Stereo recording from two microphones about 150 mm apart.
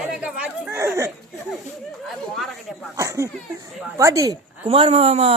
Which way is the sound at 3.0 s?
20° right (ahead or behind).